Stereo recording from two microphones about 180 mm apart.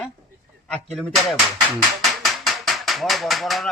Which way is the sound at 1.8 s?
Centre (ahead or behind).